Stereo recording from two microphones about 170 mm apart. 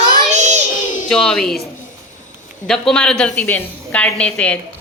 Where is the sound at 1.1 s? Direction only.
5° left (ahead or behind).